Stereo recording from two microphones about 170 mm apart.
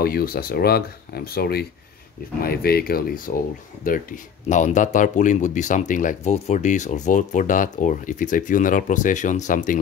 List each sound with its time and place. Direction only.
0.0 s speech: 60° left (ahead or behind)